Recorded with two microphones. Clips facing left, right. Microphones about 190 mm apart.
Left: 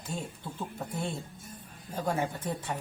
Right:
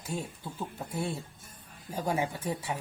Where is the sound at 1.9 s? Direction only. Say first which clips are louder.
Even; 10° right (ahead or behind).